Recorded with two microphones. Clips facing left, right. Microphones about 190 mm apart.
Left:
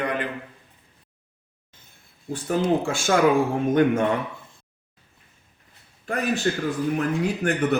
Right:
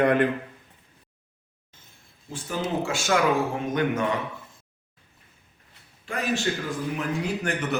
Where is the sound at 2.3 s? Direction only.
55° left (ahead or behind).